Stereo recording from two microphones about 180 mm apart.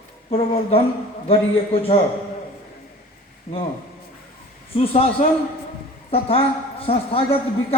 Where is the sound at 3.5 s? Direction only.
35° left (ahead or behind).